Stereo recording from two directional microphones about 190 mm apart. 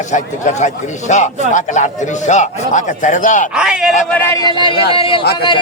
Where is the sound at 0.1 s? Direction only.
40° left (ahead or behind).